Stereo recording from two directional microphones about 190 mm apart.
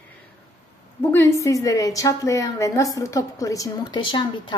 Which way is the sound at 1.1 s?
15° left (ahead or behind).